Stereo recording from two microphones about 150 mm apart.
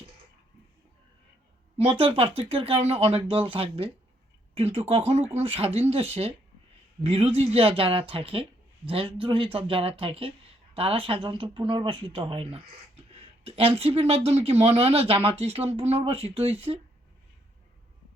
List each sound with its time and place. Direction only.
1.8 s speech: 40° right (ahead or behind)